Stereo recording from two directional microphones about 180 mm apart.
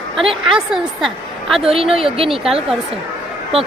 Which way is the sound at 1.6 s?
30° right (ahead or behind).